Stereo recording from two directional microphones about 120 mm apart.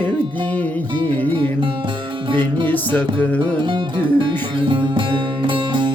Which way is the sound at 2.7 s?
15° left (ahead or behind).